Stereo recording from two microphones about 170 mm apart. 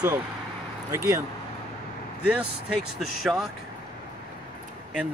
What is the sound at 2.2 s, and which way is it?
Speech, 10° right (ahead or behind).